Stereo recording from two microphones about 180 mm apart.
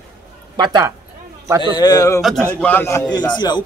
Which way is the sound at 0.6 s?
25° right (ahead or behind).